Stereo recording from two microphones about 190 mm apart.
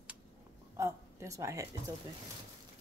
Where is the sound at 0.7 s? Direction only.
15° right (ahead or behind).